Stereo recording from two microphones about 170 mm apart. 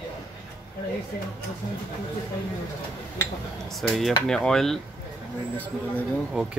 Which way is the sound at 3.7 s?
Centre (ahead or behind).